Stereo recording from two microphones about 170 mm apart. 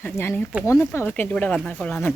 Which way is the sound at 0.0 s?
10° left (ahead or behind).